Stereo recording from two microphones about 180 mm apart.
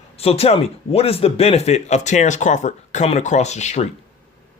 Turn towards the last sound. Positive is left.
turn(degrees=40)  # may be behind; listen again after turning